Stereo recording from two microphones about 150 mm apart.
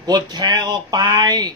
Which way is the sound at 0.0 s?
30° right (ahead or behind).